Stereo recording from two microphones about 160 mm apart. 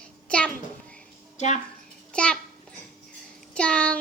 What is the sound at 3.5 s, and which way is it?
Music, 5° left (ahead or behind).